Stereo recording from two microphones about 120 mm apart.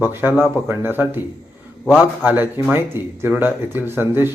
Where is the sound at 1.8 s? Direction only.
5° left (ahead or behind).